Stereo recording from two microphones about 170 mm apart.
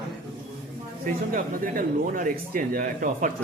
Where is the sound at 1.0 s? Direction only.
55° right (ahead or behind).